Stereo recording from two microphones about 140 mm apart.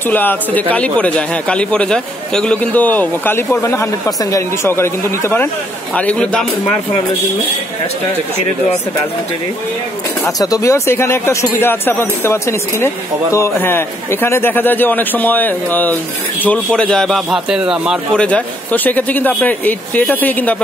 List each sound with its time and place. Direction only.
0.1 s a man's voice: 15° left (ahead or behind)
10.2 s a man's voice: 25° left (ahead or behind); by 17.9 s 5° right (ahead or behind)
18.1 s a man's voice: 10° left (ahead or behind)